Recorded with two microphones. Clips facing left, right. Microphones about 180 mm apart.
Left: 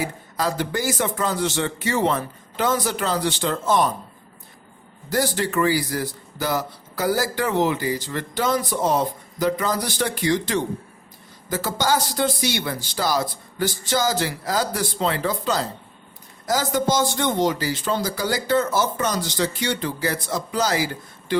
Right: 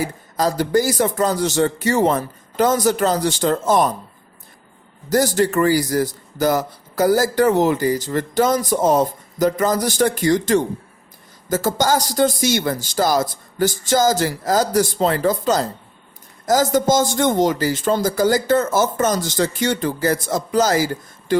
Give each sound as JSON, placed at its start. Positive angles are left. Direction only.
{"t": 0.0, "sound": "a man's voice", "side_deg": -40}
{"t": 5.0, "sound": "a man's voice", "side_deg": -45}